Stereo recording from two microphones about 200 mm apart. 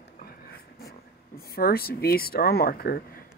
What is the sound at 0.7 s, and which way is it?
Speech, 50° left (ahead or behind).